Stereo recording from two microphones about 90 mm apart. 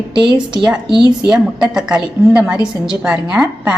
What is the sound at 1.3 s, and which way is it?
A woman's voice, 5° right (ahead or behind).